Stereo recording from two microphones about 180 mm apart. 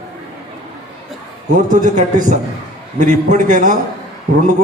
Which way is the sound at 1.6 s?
45° right (ahead or behind).